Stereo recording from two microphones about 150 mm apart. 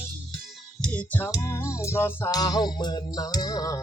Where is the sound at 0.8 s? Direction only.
10° left (ahead or behind).